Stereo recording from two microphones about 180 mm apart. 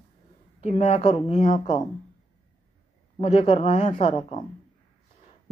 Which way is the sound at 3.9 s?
30° left (ahead or behind).